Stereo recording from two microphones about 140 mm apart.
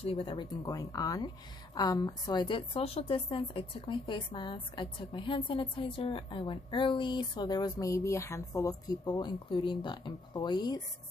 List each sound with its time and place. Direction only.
0.0 s a woman's voice: 40° left (ahead or behind)